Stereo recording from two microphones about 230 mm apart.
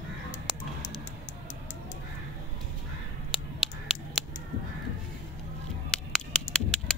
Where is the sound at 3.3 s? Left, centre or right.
Centre.